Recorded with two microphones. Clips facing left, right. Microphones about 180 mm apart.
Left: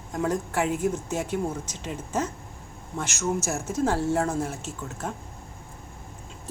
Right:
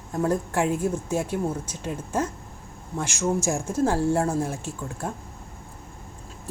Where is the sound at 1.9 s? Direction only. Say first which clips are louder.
Right 2 dB; 10° right (ahead or behind).